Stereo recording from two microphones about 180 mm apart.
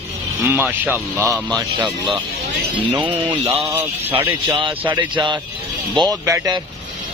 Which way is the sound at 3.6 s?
15° right (ahead or behind).